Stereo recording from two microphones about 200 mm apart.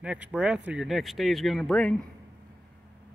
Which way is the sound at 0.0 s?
5° right (ahead or behind).